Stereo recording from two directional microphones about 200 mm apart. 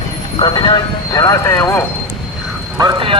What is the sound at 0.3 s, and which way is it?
Speech, 25° left (ahead or behind).